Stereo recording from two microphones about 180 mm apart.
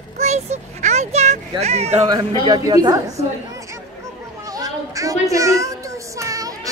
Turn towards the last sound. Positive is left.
turn(degrees=-20)  # may be behind; listen again after turning